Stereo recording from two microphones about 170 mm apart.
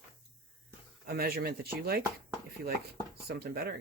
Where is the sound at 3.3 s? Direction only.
65° right (ahead or behind).